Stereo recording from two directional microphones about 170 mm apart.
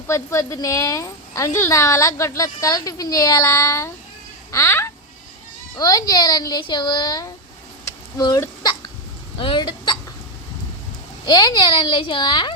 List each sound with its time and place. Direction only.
0.1 s a woman's voice: 15° left (ahead or behind)
7.9 s hiccup: 20° left (ahead or behind)
9.4 s a woman's voice: 30° left (ahead or behind)
11.3 s a woman's voice: 25° left (ahead or behind)